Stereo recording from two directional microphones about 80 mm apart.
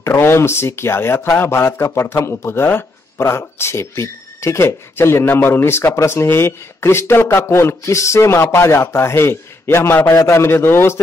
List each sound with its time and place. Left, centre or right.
0.0 s a man's voice: left
1.9 s a man's voice: left